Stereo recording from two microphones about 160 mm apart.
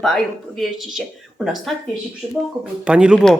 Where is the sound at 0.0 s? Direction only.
Centre (ahead or behind).